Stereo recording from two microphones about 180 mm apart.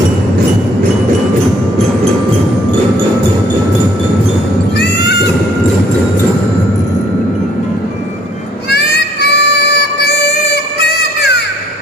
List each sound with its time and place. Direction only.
4.7 s goat: 70° left (ahead or behind)
8.6 s music: 70° left (ahead or behind)